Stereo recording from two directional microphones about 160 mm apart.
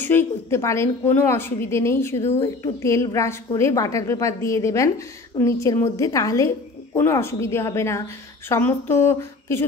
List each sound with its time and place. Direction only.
0.0 s a woman's voice: 15° left (ahead or behind)